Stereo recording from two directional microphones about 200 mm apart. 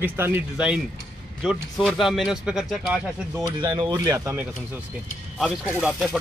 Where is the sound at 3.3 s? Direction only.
20° right (ahead or behind).